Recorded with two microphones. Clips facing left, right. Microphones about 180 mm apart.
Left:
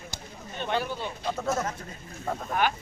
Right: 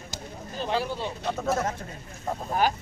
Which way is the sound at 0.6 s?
30° right (ahead or behind).